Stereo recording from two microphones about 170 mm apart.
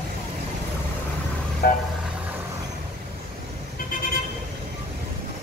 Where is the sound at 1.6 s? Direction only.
60° left (ahead or behind).